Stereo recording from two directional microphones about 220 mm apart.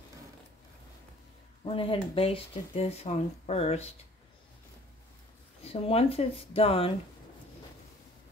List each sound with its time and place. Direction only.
1.6 s speech: 25° left (ahead or behind)
5.6 s speech: 25° left (ahead or behind)